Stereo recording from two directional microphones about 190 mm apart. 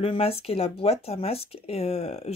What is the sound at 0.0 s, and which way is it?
Speech, 30° left (ahead or behind).